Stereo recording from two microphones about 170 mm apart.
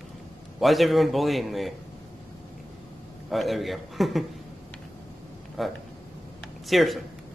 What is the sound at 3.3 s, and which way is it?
Speech, centre (ahead or behind).